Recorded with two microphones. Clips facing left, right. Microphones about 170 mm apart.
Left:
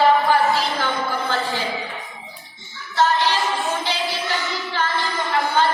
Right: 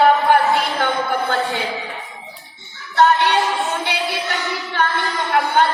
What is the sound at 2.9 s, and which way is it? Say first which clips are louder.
Music: right 4 dB; 65° right (ahead or behind).